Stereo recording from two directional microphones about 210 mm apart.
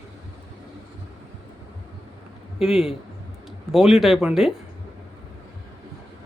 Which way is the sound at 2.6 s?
Centre (ahead or behind).